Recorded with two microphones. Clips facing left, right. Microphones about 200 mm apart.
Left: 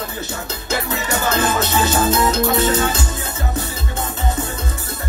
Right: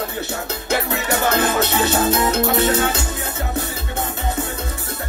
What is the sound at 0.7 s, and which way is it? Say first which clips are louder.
Music: right 1 dB; 60° right (ahead or behind).